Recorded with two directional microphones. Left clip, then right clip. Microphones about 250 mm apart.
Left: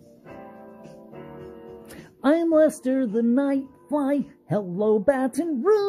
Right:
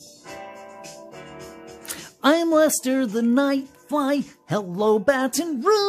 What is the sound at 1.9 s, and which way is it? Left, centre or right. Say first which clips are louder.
Speech: right 3 dB; centre.